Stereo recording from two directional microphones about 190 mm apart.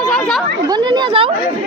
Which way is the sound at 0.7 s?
25° right (ahead or behind).